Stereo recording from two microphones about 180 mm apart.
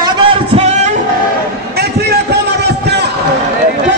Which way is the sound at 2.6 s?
70° right (ahead or behind).